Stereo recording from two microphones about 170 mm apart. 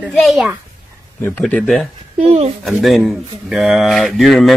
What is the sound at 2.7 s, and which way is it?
Speech, centre (ahead or behind).